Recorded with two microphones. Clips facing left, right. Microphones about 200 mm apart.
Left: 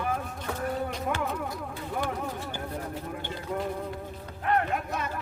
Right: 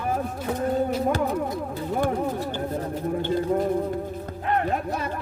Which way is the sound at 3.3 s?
40° right (ahead or behind).